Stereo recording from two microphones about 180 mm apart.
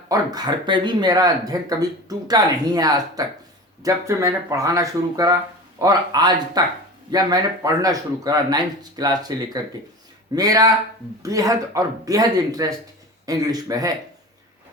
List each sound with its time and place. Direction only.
0.1 s speech: 20° right (ahead or behind)